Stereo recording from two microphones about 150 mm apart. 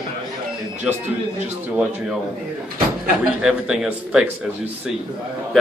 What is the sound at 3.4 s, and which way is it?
Speech, 5° right (ahead or behind).